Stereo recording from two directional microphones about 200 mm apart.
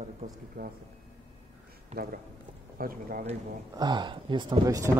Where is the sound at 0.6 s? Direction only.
55° right (ahead or behind).